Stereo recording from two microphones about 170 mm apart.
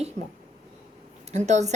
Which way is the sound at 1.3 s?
40° right (ahead or behind).